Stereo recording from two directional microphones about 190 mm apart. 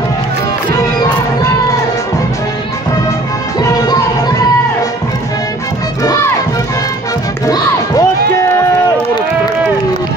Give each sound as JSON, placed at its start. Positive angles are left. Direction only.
{"t": 7.4, "sound": "crowd", "side_deg": 20}